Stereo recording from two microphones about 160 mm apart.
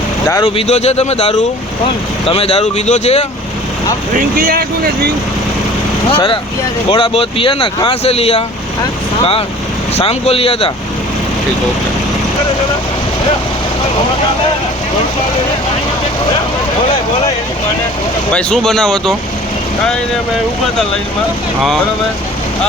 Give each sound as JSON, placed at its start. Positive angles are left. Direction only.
{"t": 0.4, "sound": "speech", "side_deg": 40}
{"t": 4.1, "sound": "speech", "side_deg": -60}
{"t": 6.1, "sound": "speech", "side_deg": 35}
{"t": 9.9, "sound": "speech", "side_deg": 40}
{"t": 18.3, "sound": "speech", "side_deg": 5}